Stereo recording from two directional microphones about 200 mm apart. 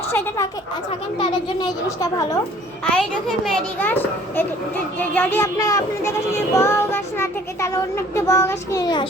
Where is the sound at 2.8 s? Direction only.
Centre (ahead or behind).